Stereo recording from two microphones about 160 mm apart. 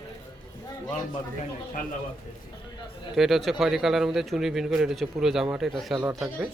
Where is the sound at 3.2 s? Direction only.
Centre (ahead or behind).